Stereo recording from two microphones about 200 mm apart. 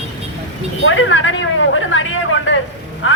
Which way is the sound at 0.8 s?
70° left (ahead or behind).